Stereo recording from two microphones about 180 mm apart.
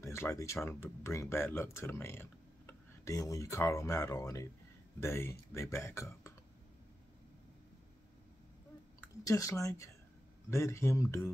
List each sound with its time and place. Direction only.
0.0 s speech: 15° left (ahead or behind)
9.0 s speech: 15° left (ahead or behind)